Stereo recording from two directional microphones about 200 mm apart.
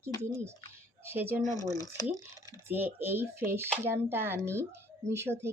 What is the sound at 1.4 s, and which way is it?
Speech, 20° left (ahead or behind).